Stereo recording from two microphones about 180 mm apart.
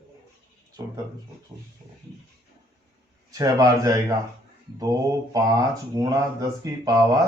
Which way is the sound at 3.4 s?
20° right (ahead or behind).